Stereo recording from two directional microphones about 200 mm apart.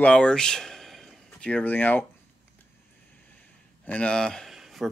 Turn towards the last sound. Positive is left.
turn(degrees=0)  # may be behind; listen again after turning